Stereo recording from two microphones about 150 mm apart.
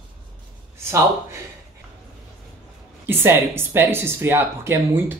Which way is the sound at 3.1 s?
15° right (ahead or behind).